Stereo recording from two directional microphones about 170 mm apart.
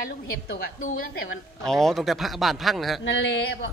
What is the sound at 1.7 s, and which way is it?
Speech, centre (ahead or behind).